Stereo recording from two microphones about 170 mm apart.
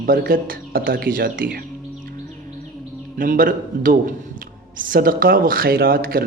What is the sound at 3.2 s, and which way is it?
A man's voice, 55° right (ahead or behind).